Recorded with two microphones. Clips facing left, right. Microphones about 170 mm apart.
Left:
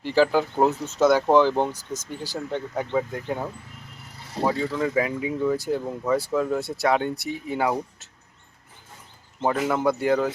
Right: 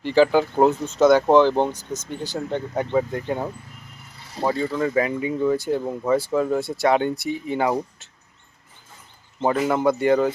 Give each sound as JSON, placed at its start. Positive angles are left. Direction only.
{"t": 0.0, "sound": "speech", "side_deg": 0}
{"t": 4.4, "sound": "speech", "side_deg": 5}
{"t": 9.5, "sound": "speech", "side_deg": -5}